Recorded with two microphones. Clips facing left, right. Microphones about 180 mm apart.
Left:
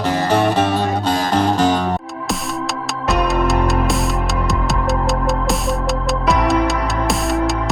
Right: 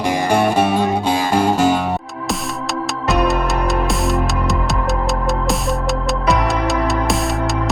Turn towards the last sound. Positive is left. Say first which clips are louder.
# left 1 dB
turn(degrees=0)  # may be behind; listen again after turning